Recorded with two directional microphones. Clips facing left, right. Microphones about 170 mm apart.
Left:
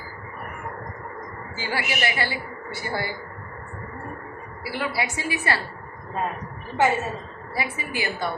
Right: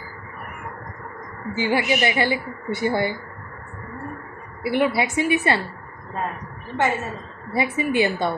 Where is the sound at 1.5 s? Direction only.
20° right (ahead or behind).